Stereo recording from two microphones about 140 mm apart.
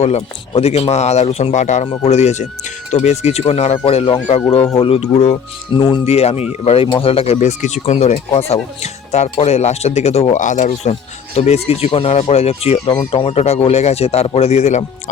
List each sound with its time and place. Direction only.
0.0 s speech: 45° left (ahead or behind)
5.7 s speech: 35° left (ahead or behind)
7.3 s speech: 60° left (ahead or behind)
10.4 s speech: 65° left (ahead or behind)
11.3 s speech: 50° left (ahead or behind)
12.9 s speech: 35° left (ahead or behind); by 14.8 s 55° left (ahead or behind)